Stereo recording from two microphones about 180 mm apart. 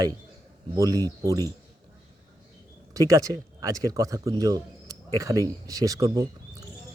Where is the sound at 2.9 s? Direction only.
20° right (ahead or behind).